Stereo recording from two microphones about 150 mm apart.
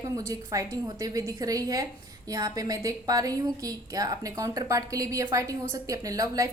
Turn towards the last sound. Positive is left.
turn(degrees=-25)  # may be behind; listen again after turning